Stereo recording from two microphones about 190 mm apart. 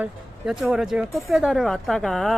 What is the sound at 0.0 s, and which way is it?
Speech, 5° right (ahead or behind).